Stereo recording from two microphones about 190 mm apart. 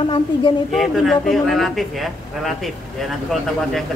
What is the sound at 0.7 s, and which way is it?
A man's voice, centre (ahead or behind).